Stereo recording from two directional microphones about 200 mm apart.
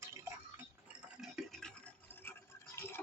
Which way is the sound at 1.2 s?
Centre (ahead or behind).